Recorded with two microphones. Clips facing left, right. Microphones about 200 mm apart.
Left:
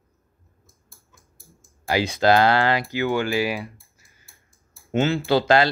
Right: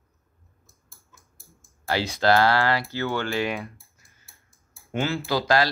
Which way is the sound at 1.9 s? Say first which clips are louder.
Left 3 dB; 15° left (ahead or behind).